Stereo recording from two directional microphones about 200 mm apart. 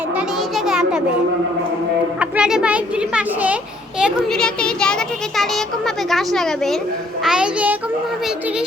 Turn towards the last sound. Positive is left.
turn(degrees=-5)  # may be behind; listen again after turning